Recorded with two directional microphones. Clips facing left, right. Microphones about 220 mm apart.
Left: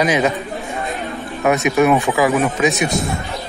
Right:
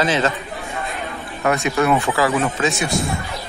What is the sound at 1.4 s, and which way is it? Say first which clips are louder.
Speech: left 4 dB; 20° left (ahead or behind).